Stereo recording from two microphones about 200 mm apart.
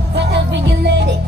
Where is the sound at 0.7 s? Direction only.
55° right (ahead or behind).